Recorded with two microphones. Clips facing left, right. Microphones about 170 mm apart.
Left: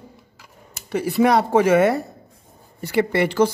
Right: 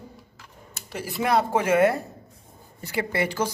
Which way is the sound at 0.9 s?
65° left (ahead or behind).